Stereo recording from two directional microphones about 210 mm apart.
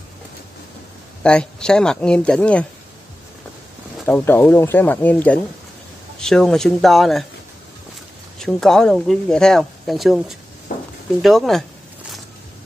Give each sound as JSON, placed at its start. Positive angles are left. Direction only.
{"t": 1.2, "sound": "speech", "side_deg": 5}
{"t": 4.0, "sound": "speech", "side_deg": 10}
{"t": 8.4, "sound": "speech", "side_deg": 0}
{"t": 10.7, "sound": "a sound", "side_deg": 45}
{"t": 11.2, "sound": "speech", "side_deg": 0}